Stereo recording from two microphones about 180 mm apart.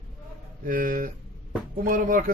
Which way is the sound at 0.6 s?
50° right (ahead or behind).